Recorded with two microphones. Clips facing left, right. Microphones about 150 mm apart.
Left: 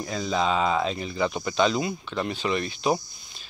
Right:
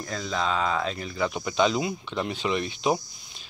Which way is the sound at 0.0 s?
15° left (ahead or behind).